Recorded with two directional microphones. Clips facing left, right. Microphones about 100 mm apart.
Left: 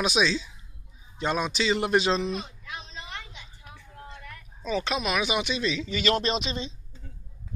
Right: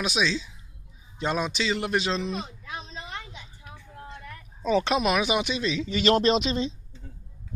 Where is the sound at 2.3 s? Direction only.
35° right (ahead or behind).